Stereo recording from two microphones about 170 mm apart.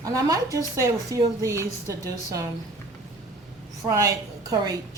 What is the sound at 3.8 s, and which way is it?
Speech, 20° right (ahead or behind).